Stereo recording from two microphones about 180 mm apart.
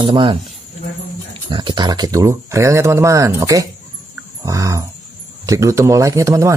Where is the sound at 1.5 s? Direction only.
25° right (ahead or behind).